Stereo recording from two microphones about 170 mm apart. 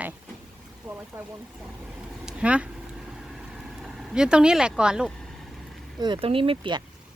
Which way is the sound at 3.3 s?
5° right (ahead or behind).